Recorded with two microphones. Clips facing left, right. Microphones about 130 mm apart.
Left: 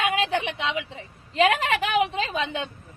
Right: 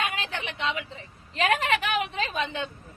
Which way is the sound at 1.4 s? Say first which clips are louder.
Left 3 dB; 25° left (ahead or behind).